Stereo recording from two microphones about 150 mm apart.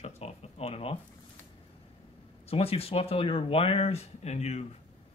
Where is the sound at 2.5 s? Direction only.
40° left (ahead or behind).